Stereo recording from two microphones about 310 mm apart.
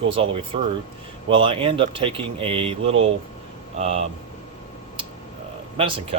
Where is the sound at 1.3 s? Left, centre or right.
Centre.